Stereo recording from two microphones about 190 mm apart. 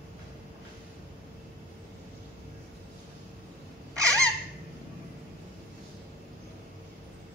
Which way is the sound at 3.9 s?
15° right (ahead or behind).